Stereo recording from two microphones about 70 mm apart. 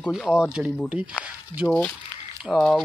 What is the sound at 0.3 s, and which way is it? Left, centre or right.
Speech, centre.